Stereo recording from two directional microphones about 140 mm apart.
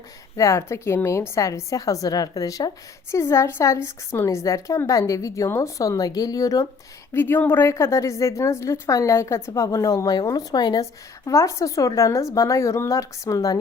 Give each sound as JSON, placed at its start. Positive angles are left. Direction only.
{"t": 0.3, "sound": "a woman's voice", "side_deg": 20}
{"t": 7.1, "sound": "a woman's voice", "side_deg": 15}